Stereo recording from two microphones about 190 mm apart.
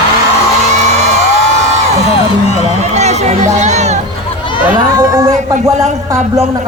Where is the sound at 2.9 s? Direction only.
35° right (ahead or behind).